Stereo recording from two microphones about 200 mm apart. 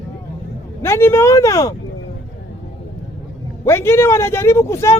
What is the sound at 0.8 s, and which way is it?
Speech, 10° left (ahead or behind).